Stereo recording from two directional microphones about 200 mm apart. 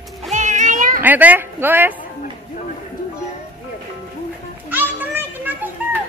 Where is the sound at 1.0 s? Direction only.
10° right (ahead or behind).